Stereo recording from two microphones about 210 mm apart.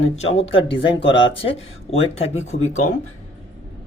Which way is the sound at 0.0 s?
65° left (ahead or behind).